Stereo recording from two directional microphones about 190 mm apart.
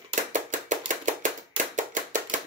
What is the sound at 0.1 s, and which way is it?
Chopping, 40° right (ahead or behind).